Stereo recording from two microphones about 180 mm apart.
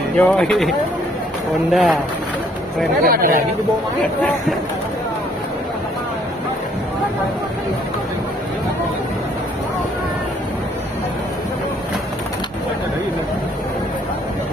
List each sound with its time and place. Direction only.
0.2 s speech: 5° left (ahead or behind)
3.0 s speech: 55° right (ahead or behind)